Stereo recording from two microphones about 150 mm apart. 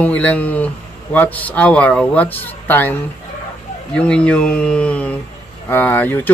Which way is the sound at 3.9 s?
5° left (ahead or behind).